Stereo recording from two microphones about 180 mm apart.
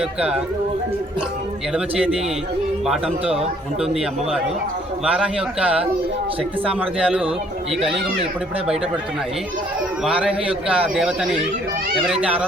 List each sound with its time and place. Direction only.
0.0 s a man's voice: 5° right (ahead or behind)
1.7 s a man's voice: 5° right (ahead or behind)
5.0 s a man's voice: 5° right (ahead or behind)
8.2 s speech: 35° right (ahead or behind)
10.0 s a man's voice: 5° right (ahead or behind)